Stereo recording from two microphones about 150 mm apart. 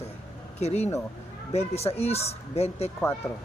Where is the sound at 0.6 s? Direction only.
45° left (ahead or behind).